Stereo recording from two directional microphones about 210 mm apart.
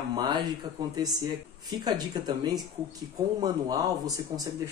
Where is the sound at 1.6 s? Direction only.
20° right (ahead or behind).